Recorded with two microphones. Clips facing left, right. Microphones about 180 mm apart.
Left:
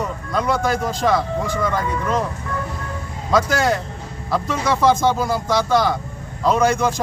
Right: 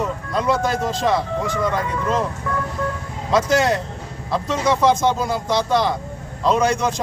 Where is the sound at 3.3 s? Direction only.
25° right (ahead or behind).